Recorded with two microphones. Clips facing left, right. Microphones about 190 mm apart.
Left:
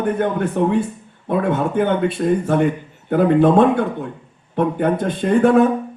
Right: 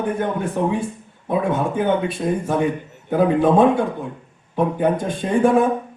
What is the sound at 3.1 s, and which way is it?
A man's voice, 60° left (ahead or behind).